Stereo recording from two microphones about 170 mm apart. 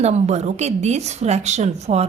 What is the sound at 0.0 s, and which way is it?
A woman's voice, 40° right (ahead or behind).